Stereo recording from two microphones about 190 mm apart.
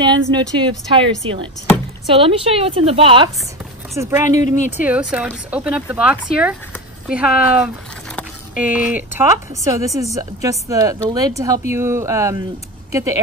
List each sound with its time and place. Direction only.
0.0 s a woman's voice: 25° right (ahead or behind)
2.1 s a woman's voice: 30° right (ahead or behind)
3.9 s speech: 15° right (ahead or behind)